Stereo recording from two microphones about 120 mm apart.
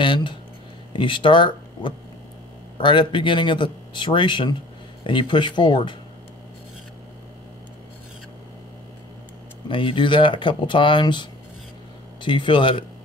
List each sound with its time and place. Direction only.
0.0 s speech: 40° left (ahead or behind)
9.7 s speech: 45° left (ahead or behind)